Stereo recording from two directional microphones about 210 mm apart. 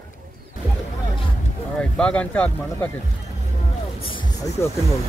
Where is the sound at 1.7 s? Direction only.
5° left (ahead or behind).